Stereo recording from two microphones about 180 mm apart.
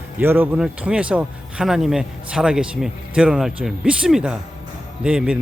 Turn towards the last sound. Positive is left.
turn(degrees=-5)  # may be behind; listen again after turning